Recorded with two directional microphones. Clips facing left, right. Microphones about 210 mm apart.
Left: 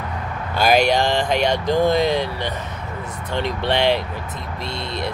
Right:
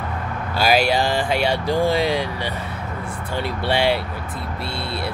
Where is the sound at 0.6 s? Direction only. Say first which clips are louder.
Left 2 dB; 5° right (ahead or behind).